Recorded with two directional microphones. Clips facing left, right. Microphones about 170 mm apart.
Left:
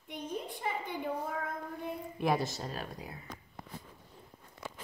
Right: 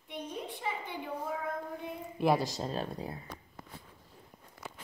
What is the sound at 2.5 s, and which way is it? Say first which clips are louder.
Speech: right 4 dB; 25° right (ahead or behind).